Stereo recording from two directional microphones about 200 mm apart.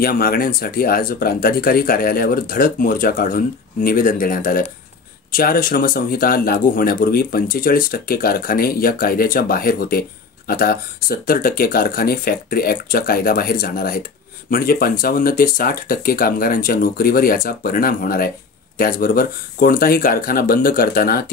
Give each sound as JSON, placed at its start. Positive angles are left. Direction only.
{"t": 0.0, "sound": "speech", "side_deg": 45}